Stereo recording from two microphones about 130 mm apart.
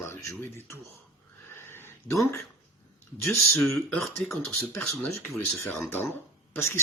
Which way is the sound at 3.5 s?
Centre (ahead or behind).